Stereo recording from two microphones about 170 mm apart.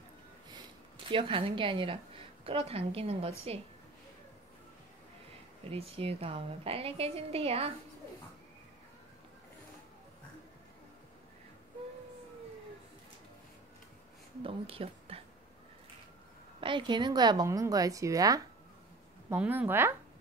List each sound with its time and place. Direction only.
1.1 s a woman's voice: 30° right (ahead or behind)
5.7 s a woman's voice: 35° right (ahead or behind)
14.4 s speech: 35° right (ahead or behind)
16.6 s a woman's voice: 30° right (ahead or behind); by 19.9 s 10° right (ahead or behind)